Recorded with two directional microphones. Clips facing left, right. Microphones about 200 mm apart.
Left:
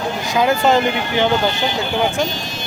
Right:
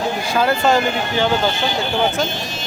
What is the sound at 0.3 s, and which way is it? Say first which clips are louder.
Speech: left 2 dB; 15° left (ahead or behind).